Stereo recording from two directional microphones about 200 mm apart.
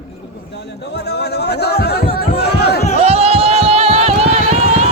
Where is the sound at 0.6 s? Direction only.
55° left (ahead or behind).